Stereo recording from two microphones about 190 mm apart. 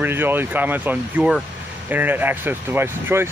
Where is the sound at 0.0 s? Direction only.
10° right (ahead or behind).